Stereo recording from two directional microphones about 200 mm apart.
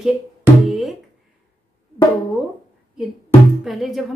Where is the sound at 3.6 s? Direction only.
Centre (ahead or behind).